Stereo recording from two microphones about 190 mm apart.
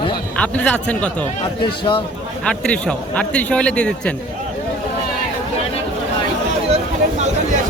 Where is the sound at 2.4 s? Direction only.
5° left (ahead or behind).